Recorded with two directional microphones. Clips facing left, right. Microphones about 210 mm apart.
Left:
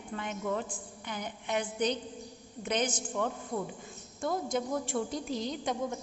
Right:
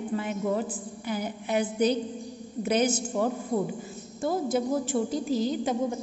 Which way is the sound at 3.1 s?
25° right (ahead or behind).